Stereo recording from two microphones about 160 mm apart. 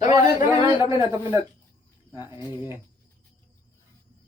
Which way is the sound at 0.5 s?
35° left (ahead or behind).